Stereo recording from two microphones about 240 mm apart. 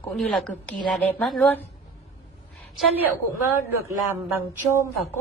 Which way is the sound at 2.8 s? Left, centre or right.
Centre.